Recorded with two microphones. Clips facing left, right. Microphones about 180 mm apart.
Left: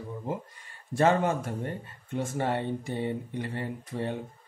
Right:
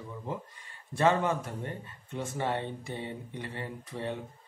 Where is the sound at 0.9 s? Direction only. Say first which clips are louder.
Left 2 dB; 45° left (ahead or behind).